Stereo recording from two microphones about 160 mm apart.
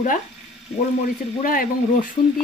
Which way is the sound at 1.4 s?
60° left (ahead or behind).